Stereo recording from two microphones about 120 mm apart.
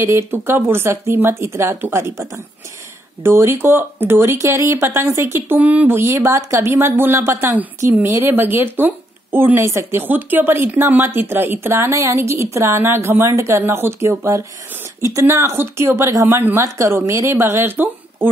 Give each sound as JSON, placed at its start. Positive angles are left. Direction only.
{"t": 0.0, "sound": "speech", "side_deg": -20}